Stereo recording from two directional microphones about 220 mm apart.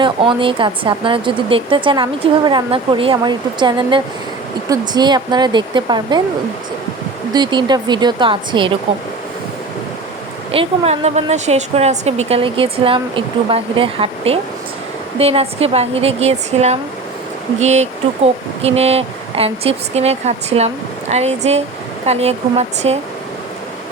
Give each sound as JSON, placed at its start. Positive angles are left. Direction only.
{"t": 0.0, "sound": "speech", "side_deg": -20}
{"t": 7.3, "sound": "speech", "side_deg": -20}
{"t": 10.5, "sound": "speech", "side_deg": -25}